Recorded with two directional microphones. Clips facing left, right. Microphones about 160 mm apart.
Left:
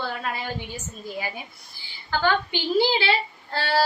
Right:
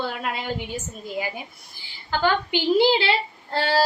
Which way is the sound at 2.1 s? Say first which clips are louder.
Right 1 dB; 15° right (ahead or behind).